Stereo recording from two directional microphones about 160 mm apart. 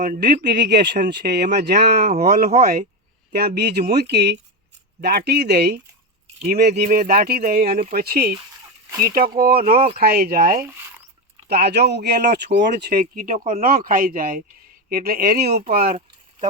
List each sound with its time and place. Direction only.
0.2 s speech: 90° right
0.9 s speech: 75° right (ahead or behind)
2.0 s speech: 50° right (ahead or behind)
3.3 s speech: 90° right; by 8.4 s 70° right (ahead or behind)
8.9 s speech: 15° right (ahead or behind)
9.4 s speech: 65° right (ahead or behind)
11.4 s speech: 85° right; by 13.6 s 45° right (ahead or behind)
13.6 s speech: 65° right (ahead or behind)